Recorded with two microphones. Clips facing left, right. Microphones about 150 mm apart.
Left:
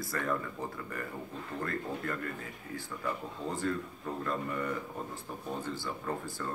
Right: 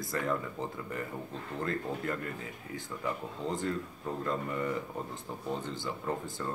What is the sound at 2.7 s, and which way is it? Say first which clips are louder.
Speech: even; 20° right (ahead or behind).